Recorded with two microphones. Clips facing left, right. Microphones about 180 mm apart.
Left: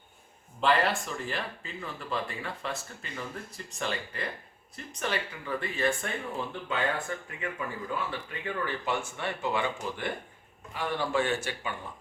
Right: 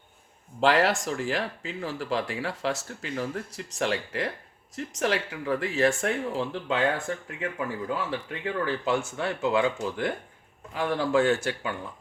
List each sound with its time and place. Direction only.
0.6 s speech: 90° right
7.1 s speech: 80° right
7.9 s speech: 90° right; by 11.5 s 65° right (ahead or behind)